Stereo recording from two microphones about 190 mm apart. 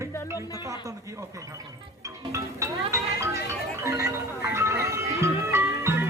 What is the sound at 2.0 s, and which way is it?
Music, 15° right (ahead or behind).